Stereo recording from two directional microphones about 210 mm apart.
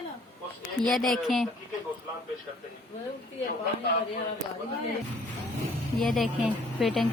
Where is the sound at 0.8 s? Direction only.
Centre (ahead or behind).